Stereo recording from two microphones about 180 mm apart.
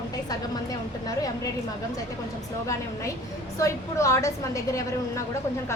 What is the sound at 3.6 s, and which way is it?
A woman's voice, 15° left (ahead or behind).